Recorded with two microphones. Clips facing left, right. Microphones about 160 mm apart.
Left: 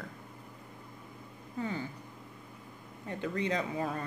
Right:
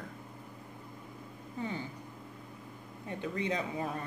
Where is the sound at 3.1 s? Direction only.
15° right (ahead or behind).